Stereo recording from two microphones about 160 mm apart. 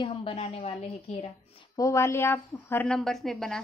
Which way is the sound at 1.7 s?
20° left (ahead or behind).